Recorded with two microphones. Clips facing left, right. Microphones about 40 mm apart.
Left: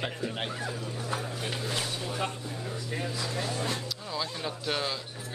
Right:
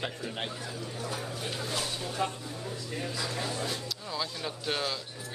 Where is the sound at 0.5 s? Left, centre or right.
Left.